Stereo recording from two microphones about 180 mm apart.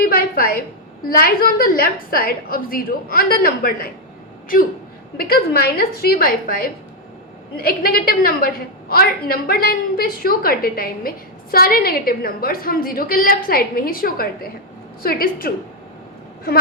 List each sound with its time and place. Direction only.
0.0 s a sound: 55° left (ahead or behind)
1.0 s a woman's voice: 55° left (ahead or behind)
5.1 s a woman's voice: 60° left (ahead or behind)